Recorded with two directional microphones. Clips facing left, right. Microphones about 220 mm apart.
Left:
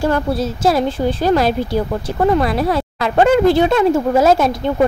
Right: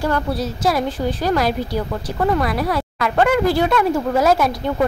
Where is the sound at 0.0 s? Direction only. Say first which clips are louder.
Left 4 dB; 25° left (ahead or behind).